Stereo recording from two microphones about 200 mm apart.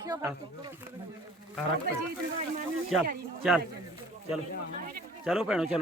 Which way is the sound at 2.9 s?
Centre (ahead or behind).